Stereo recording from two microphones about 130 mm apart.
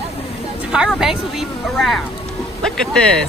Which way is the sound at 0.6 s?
5° right (ahead or behind).